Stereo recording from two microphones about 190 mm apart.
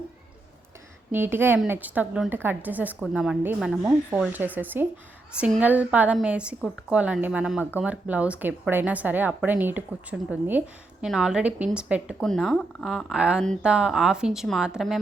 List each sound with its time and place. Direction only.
1.1 s a woman's voice: 10° right (ahead or behind)